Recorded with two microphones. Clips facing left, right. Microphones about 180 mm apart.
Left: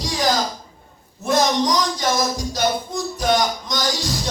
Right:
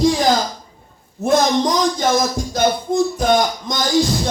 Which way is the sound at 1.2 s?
55° right (ahead or behind).